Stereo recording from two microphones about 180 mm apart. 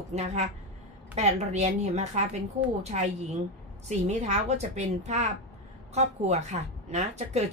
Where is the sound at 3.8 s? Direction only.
40° right (ahead or behind).